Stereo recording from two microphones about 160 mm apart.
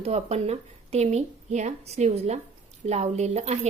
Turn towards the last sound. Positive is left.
turn(degrees=-45)  # may be behind; listen again after turning